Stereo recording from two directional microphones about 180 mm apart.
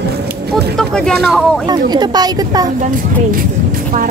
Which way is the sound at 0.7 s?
5° left (ahead or behind).